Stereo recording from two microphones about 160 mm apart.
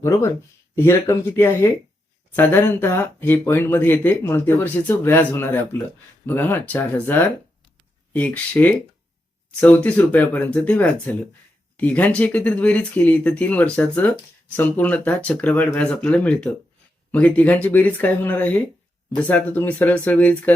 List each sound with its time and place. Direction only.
0.0 s speech: 20° left (ahead or behind)